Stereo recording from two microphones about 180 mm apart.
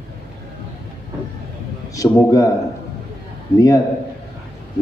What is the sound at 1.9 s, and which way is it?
Speech, 20° left (ahead or behind).